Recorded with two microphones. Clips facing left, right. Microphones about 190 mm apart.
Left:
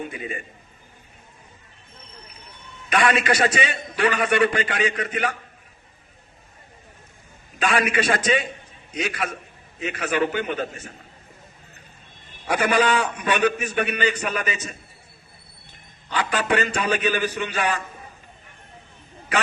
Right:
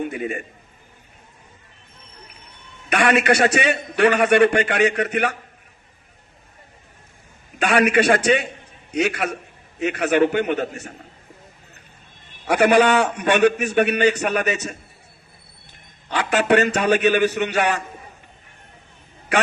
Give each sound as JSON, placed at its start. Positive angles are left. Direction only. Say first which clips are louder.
{"t": 0.0, "sound": "a man's voice", "louder": "right 6 dB", "side_deg": -60}
{"t": 2.9, "sound": "a man's voice", "louder": "right 3 dB", "side_deg": -65}
{"t": 7.6, "sound": "a man's voice", "louder": "right 5 dB", "side_deg": -65}
{"t": 12.5, "sound": "a man's voice", "louder": "right 5 dB", "side_deg": -65}
{"t": 16.0, "sound": "a man's voice", "louder": "right 5 dB", "side_deg": -65}